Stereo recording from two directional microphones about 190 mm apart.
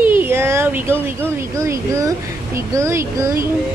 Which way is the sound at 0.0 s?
10° right (ahead or behind).